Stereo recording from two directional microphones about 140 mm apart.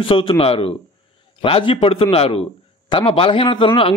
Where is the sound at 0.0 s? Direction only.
40° left (ahead or behind).